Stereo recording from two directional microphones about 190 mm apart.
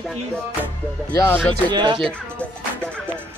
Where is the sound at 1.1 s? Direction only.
10° left (ahead or behind).